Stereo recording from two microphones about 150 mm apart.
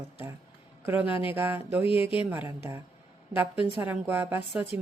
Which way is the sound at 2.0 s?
40° left (ahead or behind).